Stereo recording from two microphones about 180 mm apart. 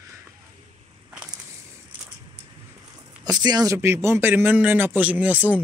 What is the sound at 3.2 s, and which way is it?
A man's voice, 20° right (ahead or behind).